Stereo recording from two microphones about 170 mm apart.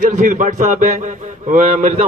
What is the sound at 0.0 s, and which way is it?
A man's voice, 45° right (ahead or behind).